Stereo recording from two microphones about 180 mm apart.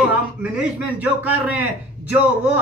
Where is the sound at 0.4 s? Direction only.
10° right (ahead or behind).